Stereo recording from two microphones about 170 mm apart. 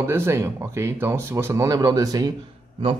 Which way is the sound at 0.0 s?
15° right (ahead or behind).